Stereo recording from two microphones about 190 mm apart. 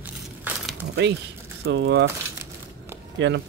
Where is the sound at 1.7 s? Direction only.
65° right (ahead or behind).